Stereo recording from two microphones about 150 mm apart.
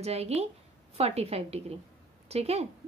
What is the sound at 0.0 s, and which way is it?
A woman's voice, 45° right (ahead or behind).